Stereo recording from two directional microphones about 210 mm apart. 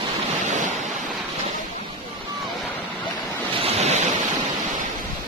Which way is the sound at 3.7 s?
30° right (ahead or behind).